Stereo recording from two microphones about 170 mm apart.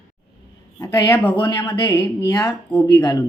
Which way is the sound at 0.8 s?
15° left (ahead or behind).